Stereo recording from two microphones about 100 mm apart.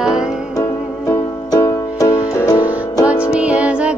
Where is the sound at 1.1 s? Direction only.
30° left (ahead or behind).